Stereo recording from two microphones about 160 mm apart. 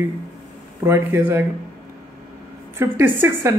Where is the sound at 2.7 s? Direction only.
15° right (ahead or behind).